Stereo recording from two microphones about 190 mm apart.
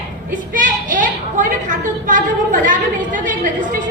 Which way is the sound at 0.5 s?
45° right (ahead or behind).